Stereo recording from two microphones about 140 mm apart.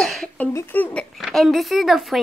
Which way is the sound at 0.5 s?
15° left (ahead or behind).